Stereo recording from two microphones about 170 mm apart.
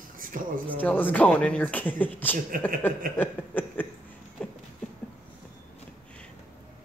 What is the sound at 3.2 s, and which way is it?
Speech, 10° left (ahead or behind).